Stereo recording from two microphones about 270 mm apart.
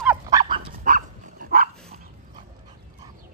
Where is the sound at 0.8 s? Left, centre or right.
Right.